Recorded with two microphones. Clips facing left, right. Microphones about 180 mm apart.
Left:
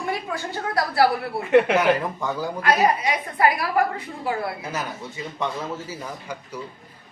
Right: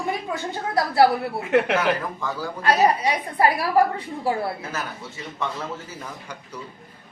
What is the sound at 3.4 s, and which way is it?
Speech, 30° right (ahead or behind).